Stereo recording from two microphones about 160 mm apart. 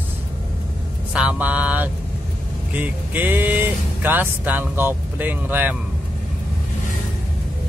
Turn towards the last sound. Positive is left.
turn(degrees=-10)  # may be behind; listen again after turning